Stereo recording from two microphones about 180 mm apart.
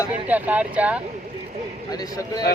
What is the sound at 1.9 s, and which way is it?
Speech, 20° left (ahead or behind).